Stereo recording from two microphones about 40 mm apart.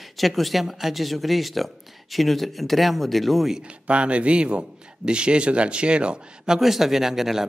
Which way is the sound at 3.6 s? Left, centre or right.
Right.